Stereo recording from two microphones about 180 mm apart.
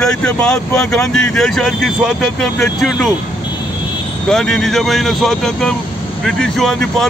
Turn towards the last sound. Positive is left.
turn(degrees=0)  # may be behind; listen again after turning